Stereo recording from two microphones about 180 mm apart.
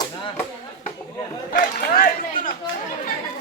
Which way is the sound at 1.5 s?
50° left (ahead or behind).